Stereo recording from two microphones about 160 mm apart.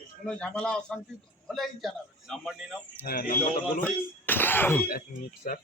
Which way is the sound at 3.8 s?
10° left (ahead or behind).